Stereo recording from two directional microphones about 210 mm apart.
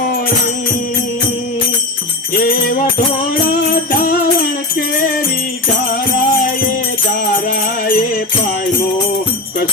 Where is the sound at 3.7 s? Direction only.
45° left (ahead or behind).